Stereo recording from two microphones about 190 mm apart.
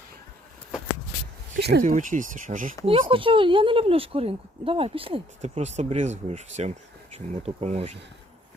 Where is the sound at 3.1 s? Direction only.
25° right (ahead or behind).